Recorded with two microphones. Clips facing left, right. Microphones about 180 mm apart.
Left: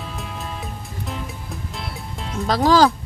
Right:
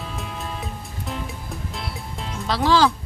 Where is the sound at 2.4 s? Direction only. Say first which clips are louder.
Left 3 dB; 45° left (ahead or behind).